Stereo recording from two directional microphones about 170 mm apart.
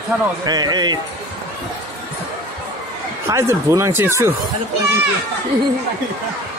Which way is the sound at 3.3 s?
15° right (ahead or behind).